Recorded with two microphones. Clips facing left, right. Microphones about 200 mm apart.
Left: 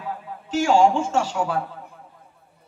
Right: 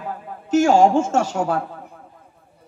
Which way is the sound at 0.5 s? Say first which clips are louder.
Right 3 dB; 45° right (ahead or behind).